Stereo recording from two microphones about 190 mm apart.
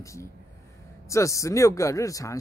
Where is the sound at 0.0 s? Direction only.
15° left (ahead or behind).